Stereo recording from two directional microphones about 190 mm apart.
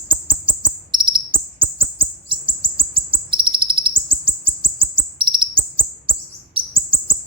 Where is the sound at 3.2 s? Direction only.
25° right (ahead or behind).